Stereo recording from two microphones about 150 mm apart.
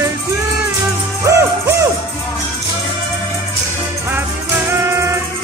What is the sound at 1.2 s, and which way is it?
Music, 20° right (ahead or behind).